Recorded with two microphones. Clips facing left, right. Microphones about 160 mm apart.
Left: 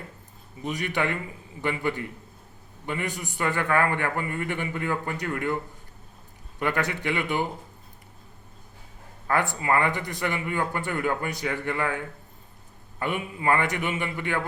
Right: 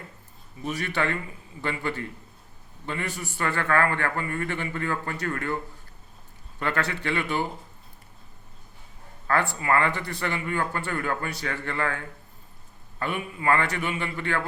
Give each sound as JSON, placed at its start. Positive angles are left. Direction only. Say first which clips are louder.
{"t": 0.6, "sound": "speech", "louder": "even", "side_deg": 15}
{"t": 6.6, "sound": "speech", "louder": "left 1 dB", "side_deg": 15}
{"t": 9.2, "sound": "speech", "louder": "even", "side_deg": 15}